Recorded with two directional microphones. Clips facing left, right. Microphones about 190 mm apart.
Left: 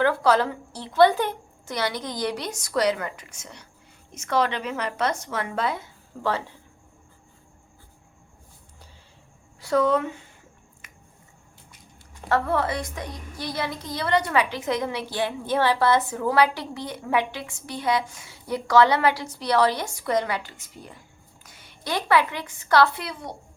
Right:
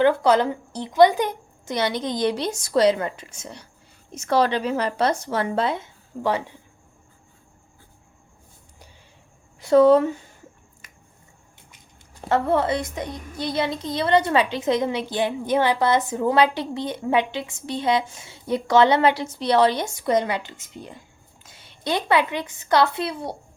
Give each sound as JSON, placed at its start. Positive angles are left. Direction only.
{"t": 0.0, "sound": "a woman's voice", "side_deg": -20}
{"t": 9.6, "sound": "speech", "side_deg": -25}
{"t": 12.3, "sound": "a woman's voice", "side_deg": -25}